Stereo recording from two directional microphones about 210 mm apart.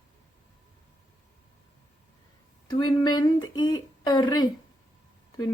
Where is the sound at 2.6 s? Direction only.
20° left (ahead or behind).